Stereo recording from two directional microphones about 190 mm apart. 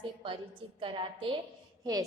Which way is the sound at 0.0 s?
25° right (ahead or behind).